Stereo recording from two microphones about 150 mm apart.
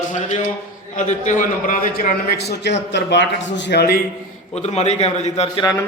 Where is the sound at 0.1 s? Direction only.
55° left (ahead or behind); by 2.6 s 80° left.